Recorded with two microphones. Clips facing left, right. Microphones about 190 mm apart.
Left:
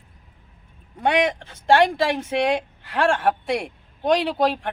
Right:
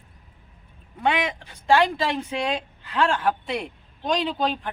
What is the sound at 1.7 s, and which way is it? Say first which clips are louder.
Speech: left 3 dB; 65° left (ahead or behind).